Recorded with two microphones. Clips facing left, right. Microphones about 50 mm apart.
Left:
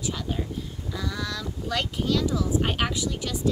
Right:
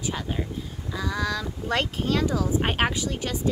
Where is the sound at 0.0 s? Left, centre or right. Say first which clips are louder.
Right 1 dB; right.